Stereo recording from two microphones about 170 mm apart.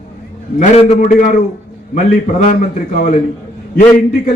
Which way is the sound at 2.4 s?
45° left (ahead or behind).